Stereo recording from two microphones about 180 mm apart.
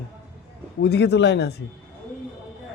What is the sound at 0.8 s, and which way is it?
Speech, 70° left (ahead or behind).